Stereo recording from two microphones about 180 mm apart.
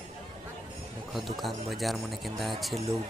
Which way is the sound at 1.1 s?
Centre (ahead or behind).